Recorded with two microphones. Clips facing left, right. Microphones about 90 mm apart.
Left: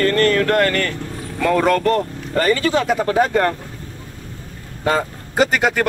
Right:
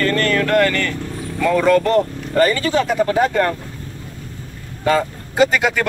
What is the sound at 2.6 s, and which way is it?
Speech, 40° left (ahead or behind).